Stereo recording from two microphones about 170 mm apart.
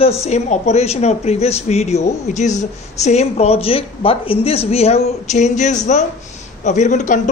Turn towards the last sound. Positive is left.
turn(degrees=45)  # may be behind; listen again after turning